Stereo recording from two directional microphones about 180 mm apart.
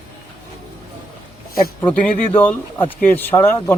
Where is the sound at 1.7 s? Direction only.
10° left (ahead or behind).